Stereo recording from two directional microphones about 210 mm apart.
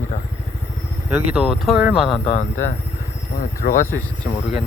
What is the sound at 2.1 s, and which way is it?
Speech, 30° left (ahead or behind).